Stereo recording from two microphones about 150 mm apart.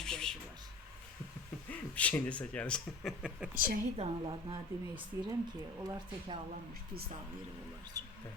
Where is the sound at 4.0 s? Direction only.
35° right (ahead or behind).